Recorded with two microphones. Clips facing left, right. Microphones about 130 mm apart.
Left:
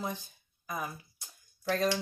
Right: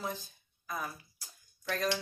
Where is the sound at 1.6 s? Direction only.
30° left (ahead or behind).